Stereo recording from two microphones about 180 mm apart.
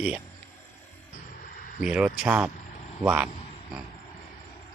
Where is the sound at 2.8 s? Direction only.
40° left (ahead or behind).